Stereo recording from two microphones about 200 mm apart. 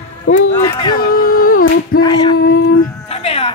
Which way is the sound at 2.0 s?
20° left (ahead or behind).